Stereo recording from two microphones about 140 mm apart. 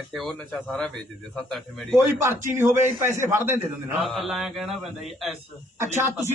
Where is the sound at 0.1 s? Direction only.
Centre (ahead or behind).